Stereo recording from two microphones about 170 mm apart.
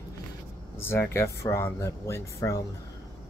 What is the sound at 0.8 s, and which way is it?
Speech, 15° left (ahead or behind).